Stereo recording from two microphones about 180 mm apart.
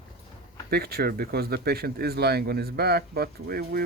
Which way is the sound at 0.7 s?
60° right (ahead or behind).